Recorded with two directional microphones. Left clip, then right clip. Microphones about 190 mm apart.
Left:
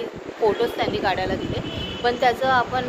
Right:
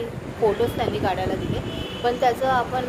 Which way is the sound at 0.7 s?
Centre (ahead or behind).